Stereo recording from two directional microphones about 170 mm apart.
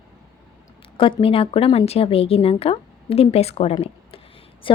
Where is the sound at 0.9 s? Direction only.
30° left (ahead or behind).